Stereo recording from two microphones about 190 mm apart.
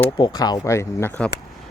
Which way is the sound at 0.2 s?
20° left (ahead or behind).